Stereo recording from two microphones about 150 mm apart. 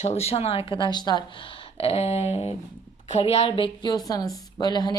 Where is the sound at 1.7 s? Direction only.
45° left (ahead or behind); by 5.0 s 30° left (ahead or behind).